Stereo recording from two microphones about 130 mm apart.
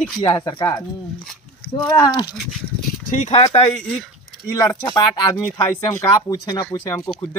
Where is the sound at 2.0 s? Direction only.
35° left (ahead or behind).